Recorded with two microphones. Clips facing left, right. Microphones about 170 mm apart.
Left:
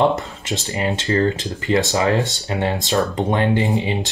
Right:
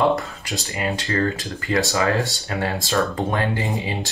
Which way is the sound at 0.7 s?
20° left (ahead or behind).